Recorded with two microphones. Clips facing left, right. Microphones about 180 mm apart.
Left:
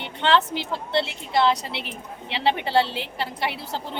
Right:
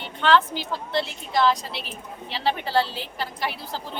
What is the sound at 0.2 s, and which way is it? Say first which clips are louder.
A woman's voice: right 1 dB; 25° left (ahead or behind).